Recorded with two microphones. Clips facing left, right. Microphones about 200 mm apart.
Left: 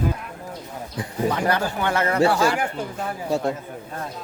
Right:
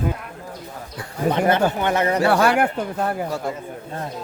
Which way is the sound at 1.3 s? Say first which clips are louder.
Right 6 dB; 25° right (ahead or behind).